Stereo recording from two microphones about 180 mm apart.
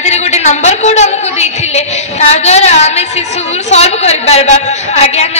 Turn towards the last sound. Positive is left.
turn(degrees=35)  # may be behind; listen again after turning